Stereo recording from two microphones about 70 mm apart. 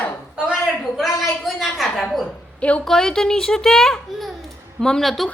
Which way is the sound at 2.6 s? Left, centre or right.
Centre.